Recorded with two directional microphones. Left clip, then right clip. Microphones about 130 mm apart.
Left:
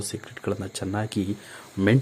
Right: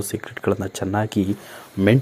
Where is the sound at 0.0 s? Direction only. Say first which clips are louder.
Right 7 dB; 20° right (ahead or behind).